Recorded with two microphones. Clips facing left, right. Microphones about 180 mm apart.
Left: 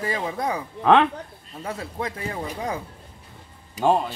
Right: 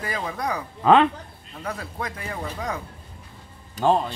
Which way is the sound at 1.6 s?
25° left (ahead or behind).